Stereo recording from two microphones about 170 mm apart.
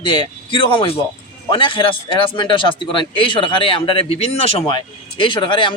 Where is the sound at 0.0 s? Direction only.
30° left (ahead or behind).